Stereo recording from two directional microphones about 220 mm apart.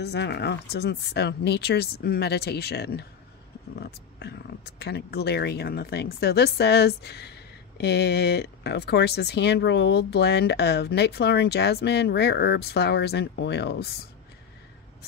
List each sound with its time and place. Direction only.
0.0 s speech: 50° left (ahead or behind)